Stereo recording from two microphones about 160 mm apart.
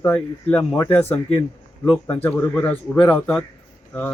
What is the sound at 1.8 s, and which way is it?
Speech, centre (ahead or behind).